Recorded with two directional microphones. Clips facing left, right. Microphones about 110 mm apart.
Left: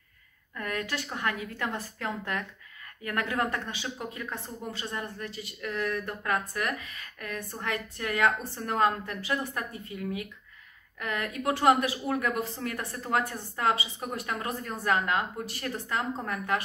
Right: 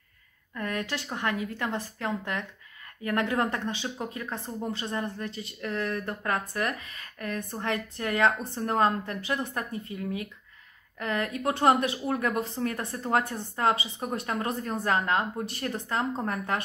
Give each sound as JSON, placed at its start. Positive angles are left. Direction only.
{"t": 0.6, "sound": "a woman's voice", "side_deg": -30}